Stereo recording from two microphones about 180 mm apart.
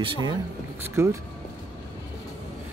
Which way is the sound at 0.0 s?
25° right (ahead or behind).